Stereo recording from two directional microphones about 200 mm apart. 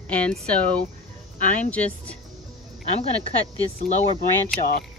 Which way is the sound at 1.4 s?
40° left (ahead or behind).